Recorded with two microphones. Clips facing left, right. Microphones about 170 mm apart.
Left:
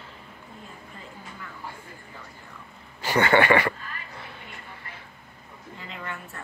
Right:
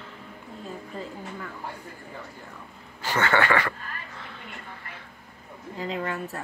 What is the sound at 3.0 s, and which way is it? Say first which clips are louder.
Speech: left 3 dB; 15° left (ahead or behind).